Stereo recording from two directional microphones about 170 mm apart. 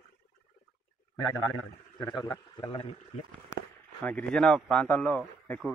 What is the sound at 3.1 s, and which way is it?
Speech, 40° left (ahead or behind).